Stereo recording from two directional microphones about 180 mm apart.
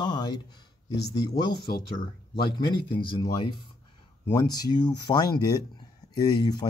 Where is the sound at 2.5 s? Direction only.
25° left (ahead or behind).